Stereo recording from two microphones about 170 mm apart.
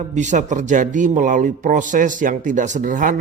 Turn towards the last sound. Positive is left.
turn(degrees=-50)  # may be behind; listen again after turning